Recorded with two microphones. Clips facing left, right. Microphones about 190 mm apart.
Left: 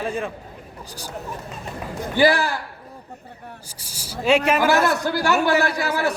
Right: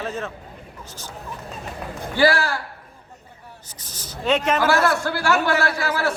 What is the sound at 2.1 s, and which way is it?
Speech, 15° left (ahead or behind).